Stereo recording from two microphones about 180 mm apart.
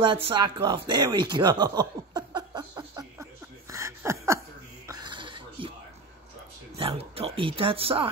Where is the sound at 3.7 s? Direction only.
15° right (ahead or behind).